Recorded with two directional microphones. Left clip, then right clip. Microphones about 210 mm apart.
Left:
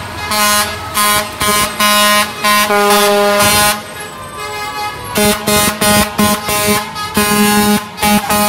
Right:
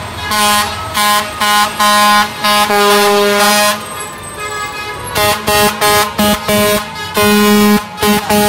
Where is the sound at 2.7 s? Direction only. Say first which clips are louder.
Right 1 dB; 45° right (ahead or behind).